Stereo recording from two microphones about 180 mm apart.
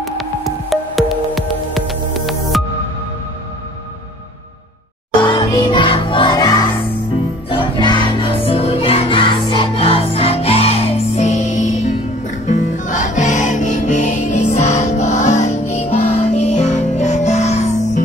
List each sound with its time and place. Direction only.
0.0 s music: centre (ahead or behind)
5.2 s music: 25° left (ahead or behind)